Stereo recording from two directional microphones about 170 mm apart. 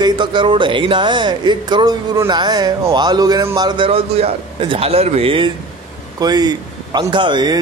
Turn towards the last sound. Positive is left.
turn(degrees=-25)  # may be behind; listen again after turning